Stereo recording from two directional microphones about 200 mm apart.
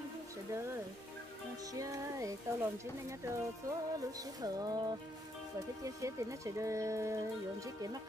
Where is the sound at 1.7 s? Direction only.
15° right (ahead or behind).